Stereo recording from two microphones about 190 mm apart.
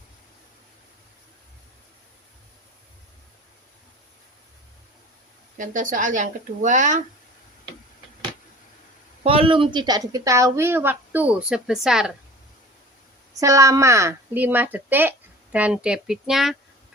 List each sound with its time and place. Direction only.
5.5 s speech: 45° right (ahead or behind)
9.2 s a woman's voice: 30° right (ahead or behind); by 12.1 s centre (ahead or behind)
13.4 s a woman's voice: 15° right (ahead or behind); by 16.6 s centre (ahead or behind)